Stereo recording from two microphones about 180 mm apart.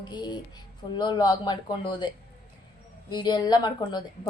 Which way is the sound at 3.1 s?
25° left (ahead or behind).